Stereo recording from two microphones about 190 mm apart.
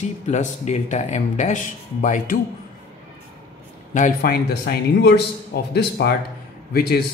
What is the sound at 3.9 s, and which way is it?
A man's voice, 45° left (ahead or behind).